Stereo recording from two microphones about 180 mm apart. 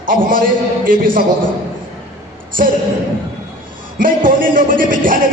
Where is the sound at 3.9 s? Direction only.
50° right (ahead or behind).